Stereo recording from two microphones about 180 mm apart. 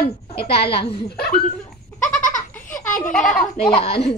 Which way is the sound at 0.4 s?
65° left (ahead or behind).